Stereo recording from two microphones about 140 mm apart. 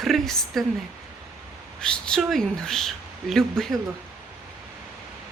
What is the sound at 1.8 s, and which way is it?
Speech, 5° left (ahead or behind).